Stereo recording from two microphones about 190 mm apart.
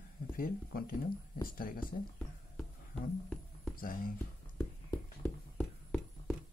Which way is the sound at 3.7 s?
50° left (ahead or behind).